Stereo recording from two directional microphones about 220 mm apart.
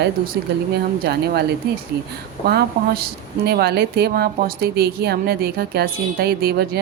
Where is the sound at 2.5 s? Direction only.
45° right (ahead or behind).